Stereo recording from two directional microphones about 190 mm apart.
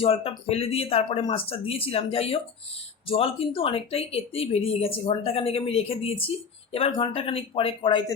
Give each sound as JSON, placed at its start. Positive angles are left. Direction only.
{"t": 0.0, "sound": "speech", "side_deg": 30}